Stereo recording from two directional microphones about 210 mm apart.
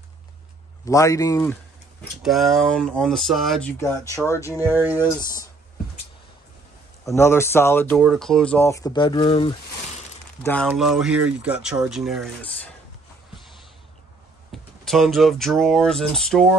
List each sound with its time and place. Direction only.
0.8 s speech: 15° left (ahead or behind)
2.2 s speech: centre (ahead or behind)
3.7 s speech: 15° left (ahead or behind)
4.6 s speech: 10° right (ahead or behind)
7.2 s speech: 10° left (ahead or behind)
10.4 s speech: 5° left (ahead or behind)
14.5 s speech: centre (ahead or behind)